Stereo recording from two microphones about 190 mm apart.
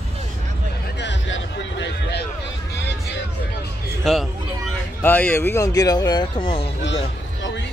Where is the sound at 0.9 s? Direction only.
75° left (ahead or behind).